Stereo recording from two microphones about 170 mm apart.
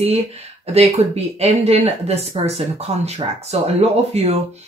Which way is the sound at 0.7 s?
40° right (ahead or behind).